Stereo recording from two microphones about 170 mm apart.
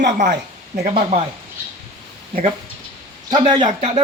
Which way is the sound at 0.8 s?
40° right (ahead or behind).